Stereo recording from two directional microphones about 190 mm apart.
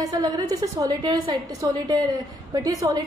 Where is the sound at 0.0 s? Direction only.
20° right (ahead or behind).